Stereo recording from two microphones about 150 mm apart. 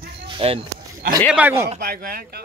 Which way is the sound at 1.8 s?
75° right (ahead or behind).